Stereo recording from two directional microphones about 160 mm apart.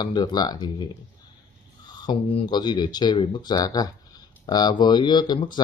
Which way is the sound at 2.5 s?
25° left (ahead or behind).